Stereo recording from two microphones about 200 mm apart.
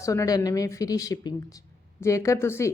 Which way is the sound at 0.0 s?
15° left (ahead or behind).